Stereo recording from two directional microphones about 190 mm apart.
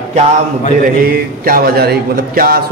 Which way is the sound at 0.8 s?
50° right (ahead or behind).